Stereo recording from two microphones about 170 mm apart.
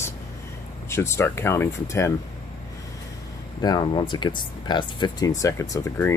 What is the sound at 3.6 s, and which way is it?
Speech, 25° left (ahead or behind).